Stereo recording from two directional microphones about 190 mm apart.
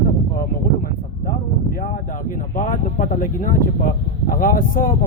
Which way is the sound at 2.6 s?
45° left (ahead or behind).